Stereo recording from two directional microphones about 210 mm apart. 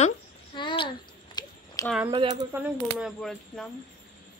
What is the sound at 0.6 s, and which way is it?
Speech, 20° left (ahead or behind).